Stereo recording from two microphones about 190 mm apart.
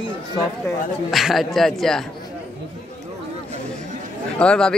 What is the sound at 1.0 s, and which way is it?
Speech, centre (ahead or behind).